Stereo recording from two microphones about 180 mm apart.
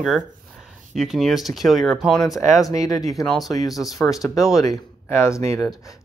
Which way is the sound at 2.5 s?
20° left (ahead or behind).